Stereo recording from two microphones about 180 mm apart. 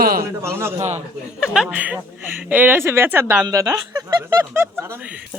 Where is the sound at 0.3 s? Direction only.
15° right (ahead or behind).